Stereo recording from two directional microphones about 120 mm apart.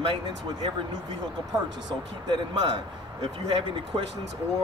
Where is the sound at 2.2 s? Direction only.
40° right (ahead or behind).